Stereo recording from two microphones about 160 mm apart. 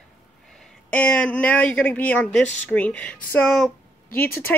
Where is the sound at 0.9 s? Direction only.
10° left (ahead or behind).